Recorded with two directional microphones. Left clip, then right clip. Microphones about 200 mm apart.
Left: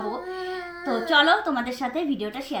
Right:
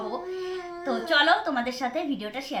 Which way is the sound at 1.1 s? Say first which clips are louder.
Left 2 dB; 10° right (ahead or behind).